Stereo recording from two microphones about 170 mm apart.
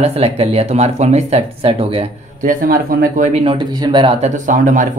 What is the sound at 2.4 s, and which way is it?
Speech, 50° right (ahead or behind).